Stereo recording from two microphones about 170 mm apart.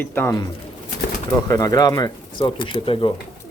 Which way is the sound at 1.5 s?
20° left (ahead or behind).